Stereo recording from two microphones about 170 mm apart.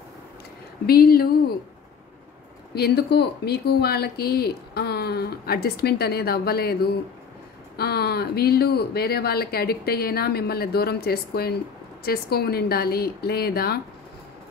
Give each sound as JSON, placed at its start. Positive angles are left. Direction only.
{"t": 0.8, "sound": "speech", "side_deg": 60}
{"t": 2.7, "sound": "speech", "side_deg": 70}